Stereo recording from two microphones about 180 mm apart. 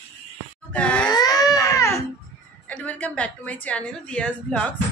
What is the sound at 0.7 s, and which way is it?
Groan, 5° left (ahead or behind).